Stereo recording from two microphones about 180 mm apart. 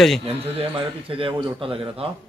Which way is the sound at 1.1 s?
30° right (ahead or behind).